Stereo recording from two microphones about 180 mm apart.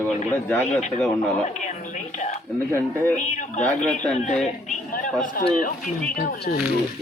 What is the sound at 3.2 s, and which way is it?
Speech, 45° left (ahead or behind).